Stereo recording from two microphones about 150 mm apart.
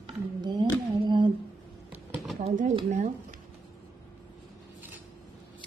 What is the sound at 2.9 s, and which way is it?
Speech, 55° right (ahead or behind).